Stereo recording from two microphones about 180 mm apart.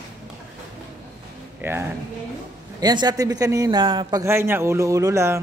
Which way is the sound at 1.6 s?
10° right (ahead or behind).